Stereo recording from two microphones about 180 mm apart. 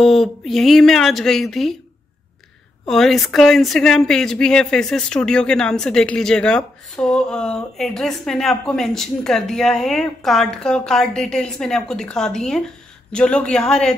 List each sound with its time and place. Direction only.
0.0 s speech: centre (ahead or behind)
2.9 s speech: centre (ahead or behind)